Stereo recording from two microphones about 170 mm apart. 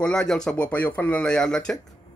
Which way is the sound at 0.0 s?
5° left (ahead or behind).